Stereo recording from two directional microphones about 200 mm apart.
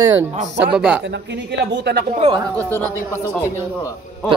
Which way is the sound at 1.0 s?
60° right (ahead or behind).